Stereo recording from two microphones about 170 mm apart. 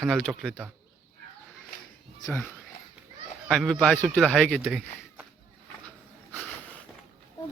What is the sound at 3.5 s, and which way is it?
Speech, 5° left (ahead or behind).